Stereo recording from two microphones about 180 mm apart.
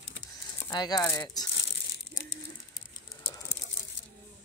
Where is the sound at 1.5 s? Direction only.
75° left (ahead or behind).